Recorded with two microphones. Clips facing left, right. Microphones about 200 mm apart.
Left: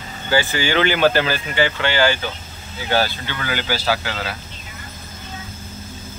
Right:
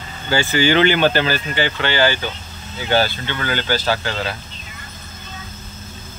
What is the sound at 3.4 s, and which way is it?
Speech, 10° left (ahead or behind).